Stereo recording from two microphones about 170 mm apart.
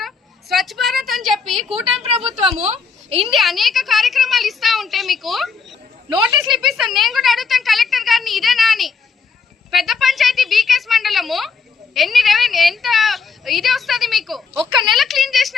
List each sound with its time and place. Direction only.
0.0 s a sound: centre (ahead or behind)
2.6 s a woman's voice: 40° right (ahead or behind)
3.2 s speech: centre (ahead or behind)